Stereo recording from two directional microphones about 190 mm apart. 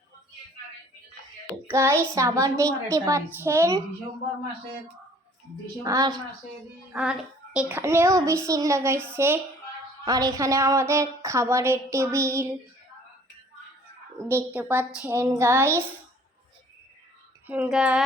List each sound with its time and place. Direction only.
1.6 s child singing: 15° right (ahead or behind)
2.1 s a woman's voice: 15° right (ahead or behind)
5.8 s a woman's voice: 20° right (ahead or behind)
6.9 s a woman's voice: 5° right (ahead or behind)
14.2 s a woman's voice: 10° right (ahead or behind)
17.4 s speech: 5° right (ahead or behind)